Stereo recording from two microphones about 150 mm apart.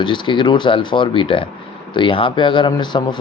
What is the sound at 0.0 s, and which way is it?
Speech, 30° left (ahead or behind).